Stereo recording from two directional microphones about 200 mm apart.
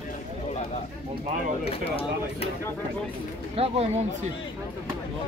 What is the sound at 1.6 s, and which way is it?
Speech, 30° left (ahead or behind).